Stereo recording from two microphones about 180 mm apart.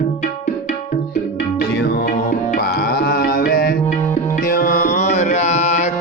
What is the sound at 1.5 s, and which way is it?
Music, 65° left (ahead or behind).